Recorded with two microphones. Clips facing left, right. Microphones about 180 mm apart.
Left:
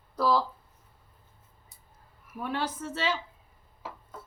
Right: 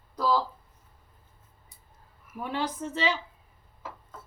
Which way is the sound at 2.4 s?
15° right (ahead or behind).